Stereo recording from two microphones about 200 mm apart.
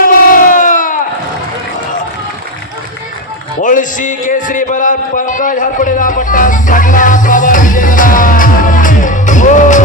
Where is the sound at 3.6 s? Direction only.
40° left (ahead or behind).